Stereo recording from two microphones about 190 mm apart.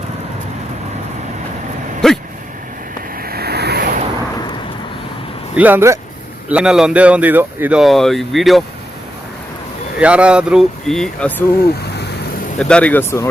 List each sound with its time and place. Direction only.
2.0 s vehicle: 5° left (ahead or behind)
3.2 s vehicle: 55° right (ahead or behind)
5.5 s speech: 10° right (ahead or behind)
10.0 s speech: 5° right (ahead or behind); by 11.5 s 10° left (ahead or behind)
12.5 s speech: 5° left (ahead or behind)